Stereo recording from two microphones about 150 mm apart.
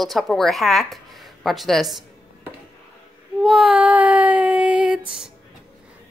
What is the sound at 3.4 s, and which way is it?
Child singing, centre (ahead or behind).